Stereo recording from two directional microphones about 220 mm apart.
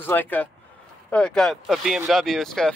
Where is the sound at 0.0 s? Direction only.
10° left (ahead or behind).